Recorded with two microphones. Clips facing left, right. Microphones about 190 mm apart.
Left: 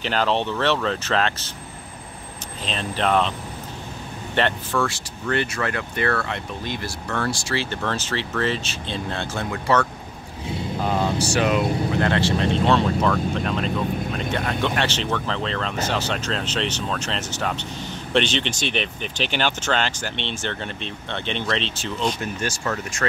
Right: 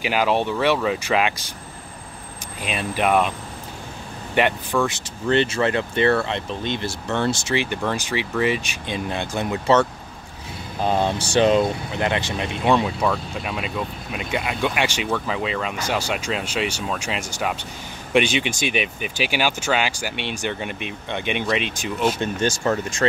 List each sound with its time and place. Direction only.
0.0 s speech: 10° right (ahead or behind)
2.6 s speech: 10° right (ahead or behind)
4.4 s speech: 15° right (ahead or behind)
10.9 s speech: 30° right (ahead or behind)
12.0 s speech: 15° right (ahead or behind)
22.6 s speech: 30° right (ahead or behind)